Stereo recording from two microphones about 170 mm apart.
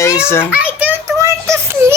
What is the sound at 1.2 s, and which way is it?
Child singing, 15° right (ahead or behind).